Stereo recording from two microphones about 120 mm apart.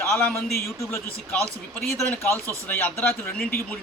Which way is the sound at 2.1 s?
20° left (ahead or behind).